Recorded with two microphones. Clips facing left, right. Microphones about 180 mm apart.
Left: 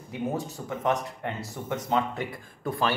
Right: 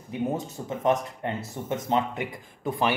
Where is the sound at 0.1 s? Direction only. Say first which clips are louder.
Right 2 dB; 25° right (ahead or behind).